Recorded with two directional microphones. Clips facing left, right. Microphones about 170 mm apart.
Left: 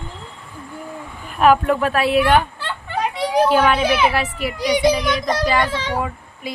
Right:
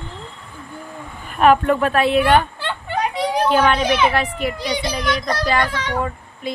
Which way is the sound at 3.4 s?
5° left (ahead or behind).